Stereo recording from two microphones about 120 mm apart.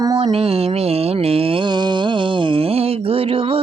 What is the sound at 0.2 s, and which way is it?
Mantra, 55° right (ahead or behind).